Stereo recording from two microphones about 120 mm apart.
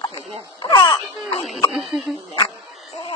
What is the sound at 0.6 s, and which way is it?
Baby cry, 40° left (ahead or behind).